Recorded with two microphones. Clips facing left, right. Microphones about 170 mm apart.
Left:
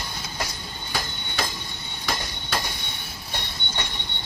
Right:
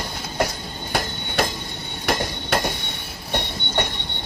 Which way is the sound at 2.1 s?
60° right (ahead or behind).